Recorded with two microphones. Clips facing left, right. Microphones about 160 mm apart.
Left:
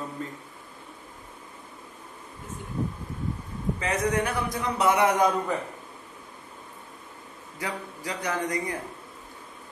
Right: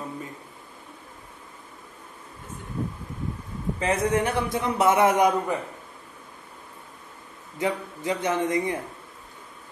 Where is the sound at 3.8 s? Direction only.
30° right (ahead or behind).